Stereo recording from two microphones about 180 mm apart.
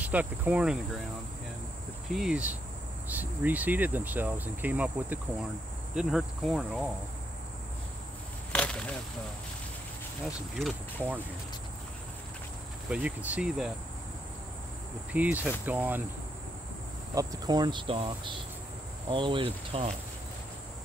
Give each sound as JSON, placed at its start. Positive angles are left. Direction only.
{"t": 0.0, "sound": "speech", "side_deg": -10}
{"t": 2.1, "sound": "speech", "side_deg": -5}
{"t": 8.5, "sound": "a sound", "side_deg": 5}
{"t": 10.2, "sound": "speech", "side_deg": 0}
{"t": 12.9, "sound": "speech", "side_deg": -5}
{"t": 15.1, "sound": "speech", "side_deg": -10}
{"t": 17.1, "sound": "speech", "side_deg": -20}